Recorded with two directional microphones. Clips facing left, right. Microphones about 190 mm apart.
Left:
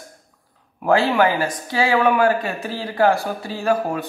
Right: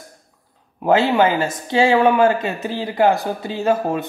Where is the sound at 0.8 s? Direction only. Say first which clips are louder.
Right 2 dB; 20° right (ahead or behind).